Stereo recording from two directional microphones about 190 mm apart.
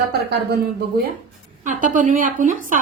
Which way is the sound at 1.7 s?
45° right (ahead or behind).